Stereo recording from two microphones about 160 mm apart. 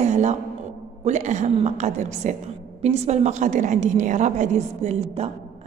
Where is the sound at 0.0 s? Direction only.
45° right (ahead or behind).